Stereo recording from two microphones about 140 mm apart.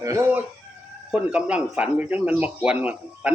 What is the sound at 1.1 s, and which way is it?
Speech, 10° right (ahead or behind).